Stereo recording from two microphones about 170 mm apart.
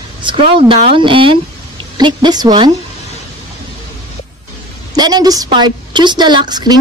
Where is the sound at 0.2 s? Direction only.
30° right (ahead or behind).